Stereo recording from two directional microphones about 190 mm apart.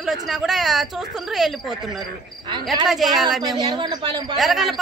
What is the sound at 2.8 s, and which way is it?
Speech, centre (ahead or behind).